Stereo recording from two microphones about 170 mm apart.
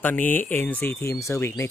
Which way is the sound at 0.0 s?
10° left (ahead or behind).